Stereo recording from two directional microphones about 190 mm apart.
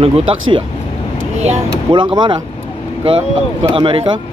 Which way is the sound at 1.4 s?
25° right (ahead or behind).